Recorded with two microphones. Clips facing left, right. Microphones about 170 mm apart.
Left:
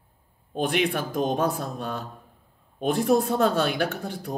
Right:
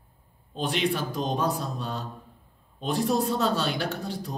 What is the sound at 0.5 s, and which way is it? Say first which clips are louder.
Speech: left 3 dB; 55° left (ahead or behind).